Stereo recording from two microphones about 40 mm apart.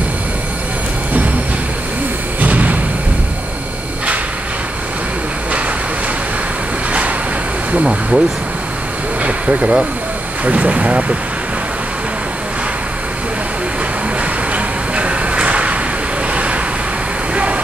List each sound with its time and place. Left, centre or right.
2.4 s a sound: right
6.9 s vehicle: right
7.7 s speech: right
9.2 s vehicle: right
10.4 s speech: right
14.5 s a sound: right